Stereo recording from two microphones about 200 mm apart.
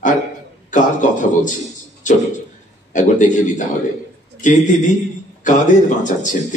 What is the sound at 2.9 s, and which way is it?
Speech, 40° left (ahead or behind).